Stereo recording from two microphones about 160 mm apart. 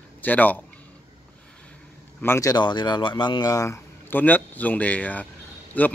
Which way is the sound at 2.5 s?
25° left (ahead or behind).